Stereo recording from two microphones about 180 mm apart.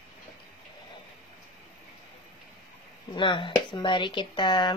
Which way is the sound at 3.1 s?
25° left (ahead or behind).